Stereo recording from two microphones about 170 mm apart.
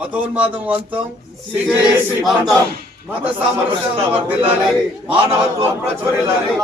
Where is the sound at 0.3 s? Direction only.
10° right (ahead or behind).